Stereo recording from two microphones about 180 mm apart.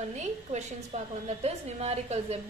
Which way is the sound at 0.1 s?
40° right (ahead or behind).